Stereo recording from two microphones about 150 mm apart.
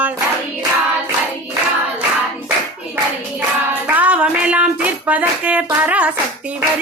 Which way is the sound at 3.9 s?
10° right (ahead or behind).